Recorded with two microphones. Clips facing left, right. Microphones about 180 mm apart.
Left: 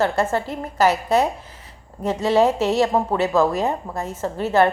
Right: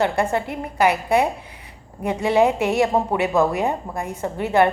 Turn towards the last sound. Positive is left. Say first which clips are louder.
# even
turn(degrees=-15)  # may be behind; listen again after turning